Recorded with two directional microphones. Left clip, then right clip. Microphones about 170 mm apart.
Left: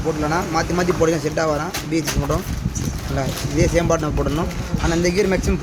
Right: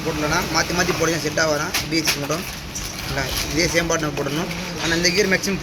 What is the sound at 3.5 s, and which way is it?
Speech, 75° left (ahead or behind).